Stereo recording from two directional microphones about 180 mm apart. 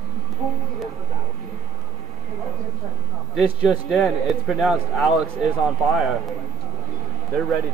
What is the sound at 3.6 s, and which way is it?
A man's voice, centre (ahead or behind).